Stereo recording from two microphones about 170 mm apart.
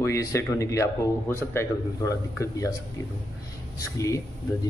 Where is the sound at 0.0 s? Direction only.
20° left (ahead or behind).